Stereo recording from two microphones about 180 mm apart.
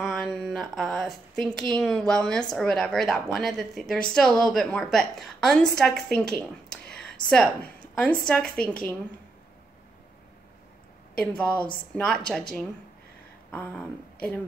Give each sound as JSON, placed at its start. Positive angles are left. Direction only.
{"t": 0.0, "sound": "a woman's voice", "side_deg": 0}
{"t": 11.1, "sound": "speech", "side_deg": 5}